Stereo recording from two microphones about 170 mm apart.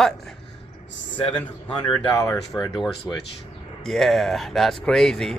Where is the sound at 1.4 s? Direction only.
5° left (ahead or behind).